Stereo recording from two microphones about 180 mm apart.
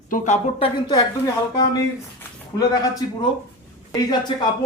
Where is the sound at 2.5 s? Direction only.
20° left (ahead or behind).